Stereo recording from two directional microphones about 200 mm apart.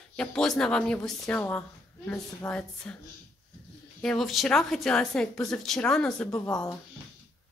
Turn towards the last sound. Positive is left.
turn(degrees=20)  # may be behind; listen again after turning